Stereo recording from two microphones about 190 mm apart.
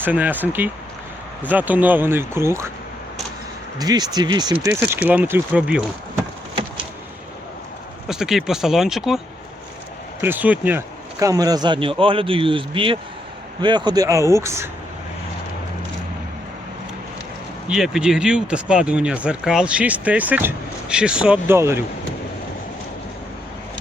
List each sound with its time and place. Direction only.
0.0 s speech: 10° right (ahead or behind)
3.8 s speech: 20° right (ahead or behind)
8.0 s speech: centre (ahead or behind)
17.7 s speech: centre (ahead or behind)